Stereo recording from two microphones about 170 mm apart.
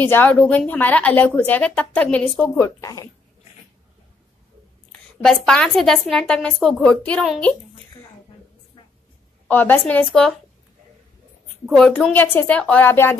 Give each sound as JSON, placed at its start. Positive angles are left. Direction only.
{"t": 0.0, "sound": "a woman's voice", "side_deg": 10}
{"t": 5.2, "sound": "a woman's voice", "side_deg": 5}
{"t": 9.5, "sound": "a woman's voice", "side_deg": 10}
{"t": 11.7, "sound": "a woman's voice", "side_deg": 5}